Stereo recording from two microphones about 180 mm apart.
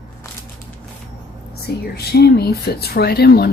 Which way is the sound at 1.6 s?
60° left (ahead or behind).